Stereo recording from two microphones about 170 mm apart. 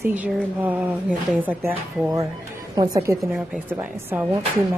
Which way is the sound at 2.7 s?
20° right (ahead or behind).